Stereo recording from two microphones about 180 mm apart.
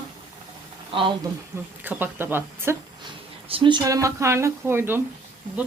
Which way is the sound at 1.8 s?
10° right (ahead or behind).